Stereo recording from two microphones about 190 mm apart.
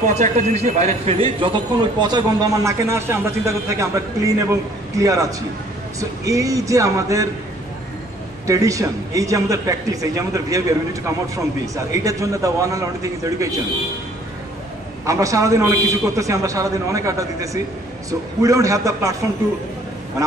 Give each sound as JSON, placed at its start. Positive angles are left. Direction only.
{"t": 0.0, "sound": "a man's voice", "side_deg": -40}
{"t": 8.5, "sound": "a man's voice", "side_deg": -15}
{"t": 15.0, "sound": "a man's voice", "side_deg": -15}
{"t": 20.2, "sound": "a man's voice", "side_deg": -20}